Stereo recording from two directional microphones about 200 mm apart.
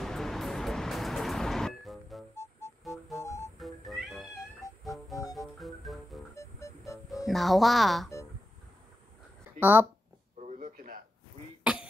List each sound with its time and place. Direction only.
0.0 s music: centre (ahead or behind)
3.2 s music: 15° left (ahead or behind)
3.5 s cat: centre (ahead or behind)
4.8 s music: centre (ahead or behind)
6.3 s music: 15° left (ahead or behind)
7.2 s speech: centre (ahead or behind)
9.6 s speech: 10° right (ahead or behind)
10.4 s a sound: 40° right (ahead or behind)
11.6 s cough: 5° right (ahead or behind)